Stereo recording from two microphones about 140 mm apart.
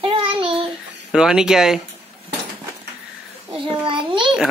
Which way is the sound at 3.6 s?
35° right (ahead or behind).